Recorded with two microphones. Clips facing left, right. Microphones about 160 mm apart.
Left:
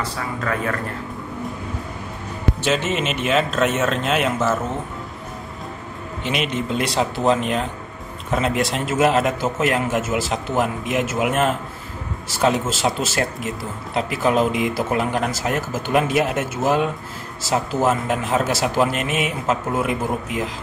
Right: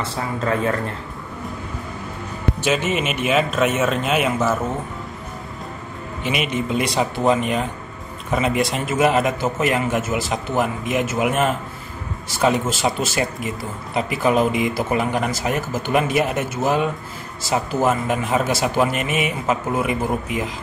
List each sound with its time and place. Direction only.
0.0 s speech: 25° right (ahead or behind)
2.6 s a man's voice: 5° right (ahead or behind)
6.2 s a man's voice: 5° right (ahead or behind)